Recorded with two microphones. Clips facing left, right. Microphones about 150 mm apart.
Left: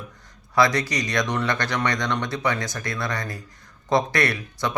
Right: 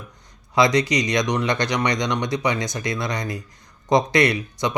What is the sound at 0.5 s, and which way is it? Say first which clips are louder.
Speech: right 3 dB; 20° right (ahead or behind).